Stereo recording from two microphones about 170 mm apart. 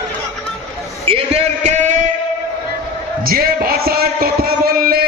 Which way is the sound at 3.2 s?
60° right (ahead or behind).